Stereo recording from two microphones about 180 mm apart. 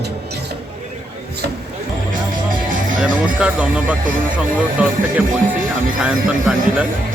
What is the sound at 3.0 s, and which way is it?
Speech, 5° right (ahead or behind).